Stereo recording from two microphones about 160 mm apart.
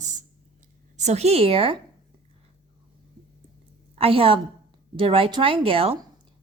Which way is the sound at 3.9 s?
35° right (ahead or behind).